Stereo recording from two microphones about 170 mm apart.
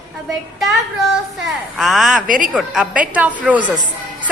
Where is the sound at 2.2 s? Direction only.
50° right (ahead or behind).